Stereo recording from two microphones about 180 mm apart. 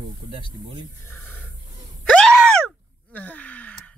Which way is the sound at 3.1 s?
10° left (ahead or behind).